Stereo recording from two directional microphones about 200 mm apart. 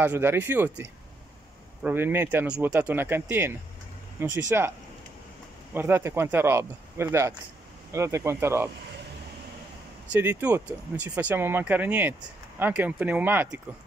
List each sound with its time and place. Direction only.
0.0 s speech: 10° right (ahead or behind)
10.1 s speech: 10° right (ahead or behind)